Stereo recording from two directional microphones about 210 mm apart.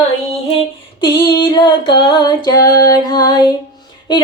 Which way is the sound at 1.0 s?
20° left (ahead or behind).